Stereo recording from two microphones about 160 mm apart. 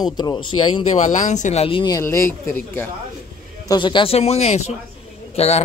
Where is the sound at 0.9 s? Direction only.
50° left (ahead or behind); by 1.9 s 35° left (ahead or behind).